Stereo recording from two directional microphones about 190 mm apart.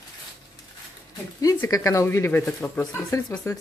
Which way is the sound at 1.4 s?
20° left (ahead or behind).